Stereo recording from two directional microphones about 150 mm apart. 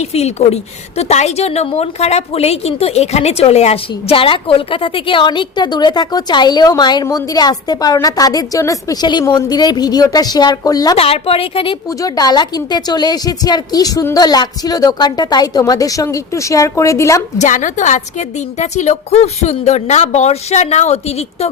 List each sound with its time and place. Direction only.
0.0 s a woman's voice: 45° left (ahead or behind); by 10.9 s 25° left (ahead or behind)
10.9 s a woman's voice: 40° left (ahead or behind)
11.9 s a woman's voice: 25° left (ahead or behind)
17.3 s a woman's voice: 55° left (ahead or behind)